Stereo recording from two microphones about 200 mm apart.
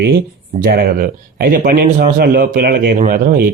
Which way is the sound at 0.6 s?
50° right (ahead or behind).